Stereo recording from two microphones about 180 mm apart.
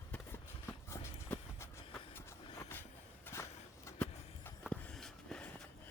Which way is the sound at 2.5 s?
15° left (ahead or behind).